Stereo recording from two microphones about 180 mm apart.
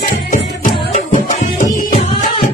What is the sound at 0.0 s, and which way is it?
Music, 45° left (ahead or behind).